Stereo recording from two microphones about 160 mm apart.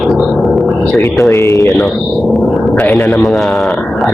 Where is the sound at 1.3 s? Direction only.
15° left (ahead or behind).